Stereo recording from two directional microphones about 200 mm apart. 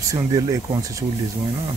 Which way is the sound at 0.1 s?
20° right (ahead or behind).